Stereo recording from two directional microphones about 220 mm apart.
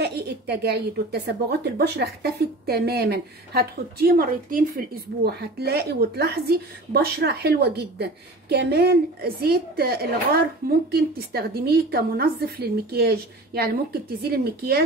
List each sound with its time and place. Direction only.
0.0 s a woman's voice: 50° right (ahead or behind)